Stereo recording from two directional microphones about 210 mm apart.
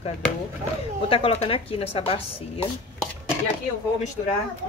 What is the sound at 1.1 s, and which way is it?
Speech, 25° left (ahead or behind).